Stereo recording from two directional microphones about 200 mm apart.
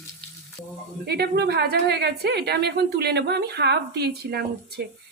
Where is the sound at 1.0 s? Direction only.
55° right (ahead or behind).